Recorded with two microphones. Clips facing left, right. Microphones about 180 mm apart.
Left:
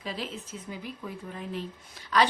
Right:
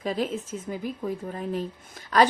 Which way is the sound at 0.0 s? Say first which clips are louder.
Right 8 dB; 45° right (ahead or behind).